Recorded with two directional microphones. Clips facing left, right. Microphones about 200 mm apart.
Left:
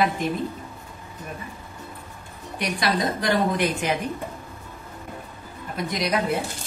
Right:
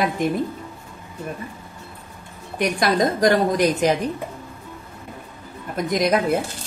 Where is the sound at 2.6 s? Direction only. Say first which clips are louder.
Right 5 dB; 45° right (ahead or behind).